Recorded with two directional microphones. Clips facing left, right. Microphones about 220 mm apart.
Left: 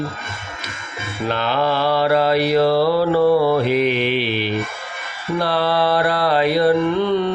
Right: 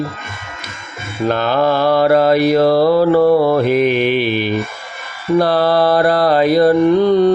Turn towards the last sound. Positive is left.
turn(degrees=-40)  # may be behind; listen again after turning